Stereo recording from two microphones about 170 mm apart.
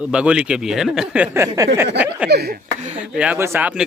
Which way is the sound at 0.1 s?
5° right (ahead or behind).